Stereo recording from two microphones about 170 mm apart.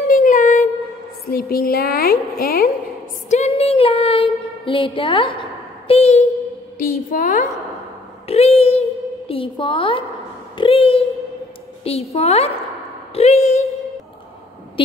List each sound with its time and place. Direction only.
0.1 s child singing: 50° left (ahead or behind)
1.2 s a woman's voice: 60° left (ahead or behind)
3.3 s child singing: 40° left (ahead or behind)
6.8 s a woman's voice: 55° left (ahead or behind)
8.3 s a woman's voice: 40° left (ahead or behind)
10.6 s child singing: 35° left (ahead or behind)
11.8 s a woman's voice: 35° left (ahead or behind)
13.1 s a sound: 40° left (ahead or behind)